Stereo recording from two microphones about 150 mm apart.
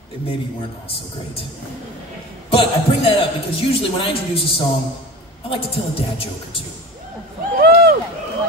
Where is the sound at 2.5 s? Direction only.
35° left (ahead or behind).